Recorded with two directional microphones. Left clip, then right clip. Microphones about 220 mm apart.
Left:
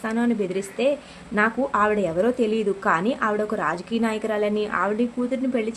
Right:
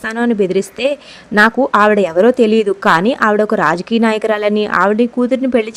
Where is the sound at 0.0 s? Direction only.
40° right (ahead or behind).